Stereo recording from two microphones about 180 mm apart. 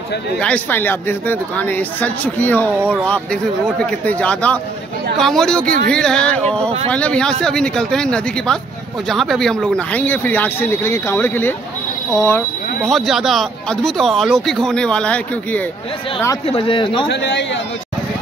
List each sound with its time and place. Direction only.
0.4 s speech: 10° left (ahead or behind)
12.8 s speech: centre (ahead or behind)
16.4 s speech: 30° left (ahead or behind)